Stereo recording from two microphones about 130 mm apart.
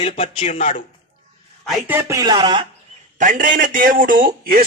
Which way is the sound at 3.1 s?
80° right.